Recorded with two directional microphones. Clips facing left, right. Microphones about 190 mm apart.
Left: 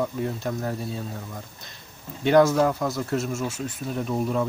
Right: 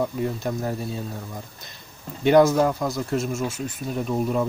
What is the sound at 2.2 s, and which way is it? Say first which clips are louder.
Speech: right 2 dB; 5° right (ahead or behind).